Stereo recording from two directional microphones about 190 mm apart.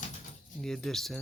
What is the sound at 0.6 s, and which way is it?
Speech, 5° left (ahead or behind).